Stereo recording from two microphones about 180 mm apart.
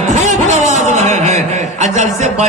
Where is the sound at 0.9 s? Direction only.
40° right (ahead or behind).